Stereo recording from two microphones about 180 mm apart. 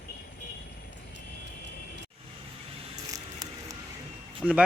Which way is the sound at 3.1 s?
20° right (ahead or behind).